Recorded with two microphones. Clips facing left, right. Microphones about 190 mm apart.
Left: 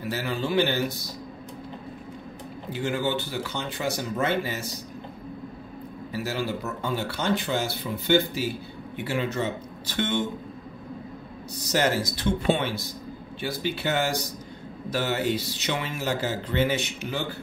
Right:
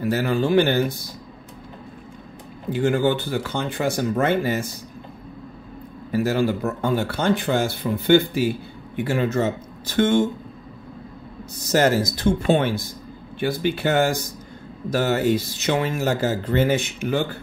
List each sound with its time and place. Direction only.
0.0 s speech: 50° right (ahead or behind)
2.7 s speech: 50° right (ahead or behind)
6.1 s speech: 50° right (ahead or behind)
11.6 s speech: 45° right (ahead or behind)